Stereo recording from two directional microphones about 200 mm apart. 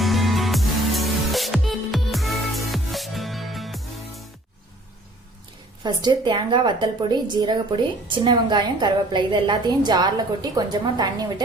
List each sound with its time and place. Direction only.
0.0 s music: centre (ahead or behind)
5.8 s a woman's voice: 20° right (ahead or behind)